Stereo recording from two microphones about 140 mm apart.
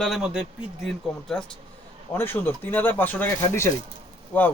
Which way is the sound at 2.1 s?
15° left (ahead or behind).